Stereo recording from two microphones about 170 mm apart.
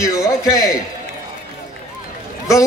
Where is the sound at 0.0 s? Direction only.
20° left (ahead or behind).